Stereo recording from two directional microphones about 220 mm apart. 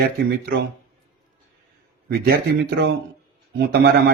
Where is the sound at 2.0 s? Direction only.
45° right (ahead or behind).